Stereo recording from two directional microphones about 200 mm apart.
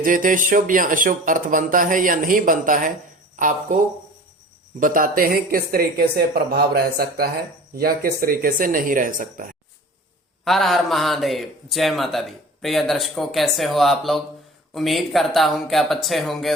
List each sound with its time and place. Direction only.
0.0 s speech: 45° right (ahead or behind)
4.8 s speech: 45° right (ahead or behind)
10.4 s a man's voice: centre (ahead or behind)